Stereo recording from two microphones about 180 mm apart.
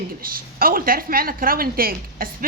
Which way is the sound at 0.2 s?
55° right (ahead or behind).